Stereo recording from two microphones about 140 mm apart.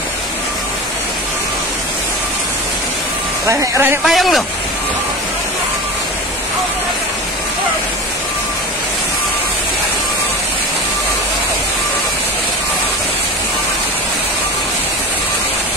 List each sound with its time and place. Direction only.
3.4 s speech: 20° right (ahead or behind)
4.0 s speech: centre (ahead or behind)